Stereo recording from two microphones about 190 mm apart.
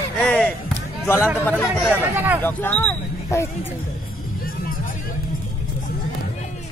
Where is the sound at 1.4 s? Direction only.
10° left (ahead or behind).